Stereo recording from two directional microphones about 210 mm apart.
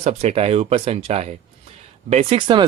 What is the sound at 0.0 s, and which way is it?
Speech, 30° right (ahead or behind).